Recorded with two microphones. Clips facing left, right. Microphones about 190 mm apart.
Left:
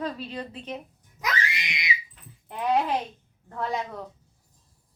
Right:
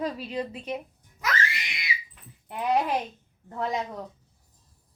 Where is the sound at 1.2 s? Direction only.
15° left (ahead or behind).